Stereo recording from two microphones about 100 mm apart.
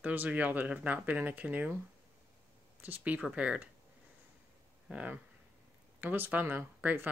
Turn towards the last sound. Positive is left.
turn(degrees=-20)  # may be behind; listen again after turning